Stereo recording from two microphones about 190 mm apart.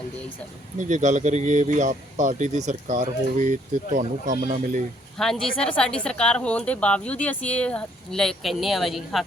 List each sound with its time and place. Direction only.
0.8 s speech: 40° right (ahead or behind)
5.1 s speech: centre (ahead or behind)